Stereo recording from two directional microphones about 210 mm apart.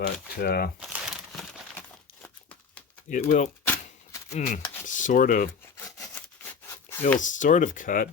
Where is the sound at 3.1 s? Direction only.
35° left (ahead or behind).